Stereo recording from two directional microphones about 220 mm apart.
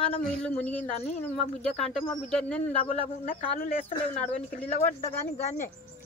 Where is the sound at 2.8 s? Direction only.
40° left (ahead or behind).